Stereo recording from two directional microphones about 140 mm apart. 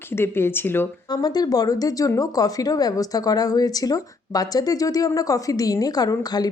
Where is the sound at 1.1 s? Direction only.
30° left (ahead or behind).